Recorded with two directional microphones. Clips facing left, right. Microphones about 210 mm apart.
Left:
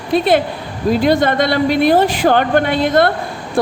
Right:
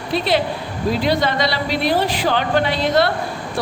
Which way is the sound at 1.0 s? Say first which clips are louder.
Left 6 dB; 50° left (ahead or behind).